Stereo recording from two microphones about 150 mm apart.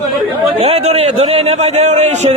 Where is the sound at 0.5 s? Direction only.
40° right (ahead or behind).